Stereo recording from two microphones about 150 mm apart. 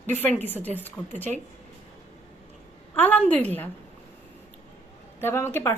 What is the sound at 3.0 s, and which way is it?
Speech, 10° left (ahead or behind).